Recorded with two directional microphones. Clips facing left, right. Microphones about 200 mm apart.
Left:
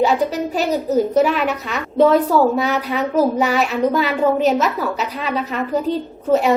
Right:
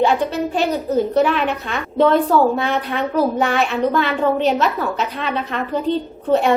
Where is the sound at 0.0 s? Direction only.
5° left (ahead or behind).